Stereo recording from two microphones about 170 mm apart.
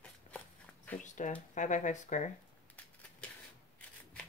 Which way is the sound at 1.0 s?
45° left (ahead or behind).